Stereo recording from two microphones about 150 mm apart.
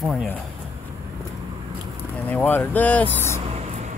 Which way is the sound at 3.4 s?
50° right (ahead or behind).